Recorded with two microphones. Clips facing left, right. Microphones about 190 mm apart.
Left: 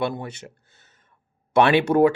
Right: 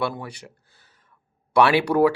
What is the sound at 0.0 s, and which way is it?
Speech, 20° left (ahead or behind).